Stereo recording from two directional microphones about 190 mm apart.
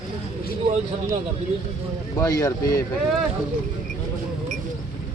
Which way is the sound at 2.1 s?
20° left (ahead or behind).